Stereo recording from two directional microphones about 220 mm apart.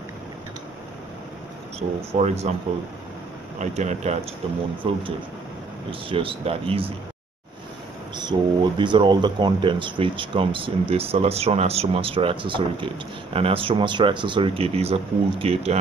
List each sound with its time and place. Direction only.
2.1 s speech: 30° right (ahead or behind)
3.5 s speech: 30° right (ahead or behind)
8.2 s speech: 20° right (ahead or behind)